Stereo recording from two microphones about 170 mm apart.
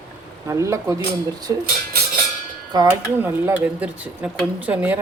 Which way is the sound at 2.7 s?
25° right (ahead or behind).